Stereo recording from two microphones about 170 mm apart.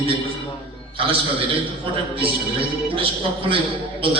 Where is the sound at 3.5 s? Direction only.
30° right (ahead or behind).